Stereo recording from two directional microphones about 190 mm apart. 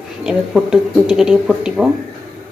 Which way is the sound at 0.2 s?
5° right (ahead or behind).